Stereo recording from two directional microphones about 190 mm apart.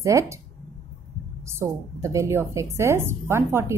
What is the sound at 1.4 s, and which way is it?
A woman's voice, 15° right (ahead or behind).